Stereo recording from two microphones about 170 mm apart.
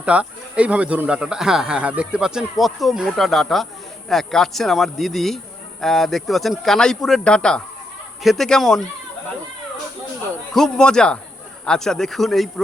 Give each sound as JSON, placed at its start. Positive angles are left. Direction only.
{"t": 0.0, "sound": "speech", "side_deg": -5}
{"t": 10.5, "sound": "speech", "side_deg": 5}